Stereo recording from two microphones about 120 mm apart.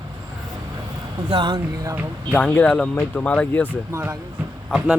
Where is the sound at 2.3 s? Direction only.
15° left (ahead or behind).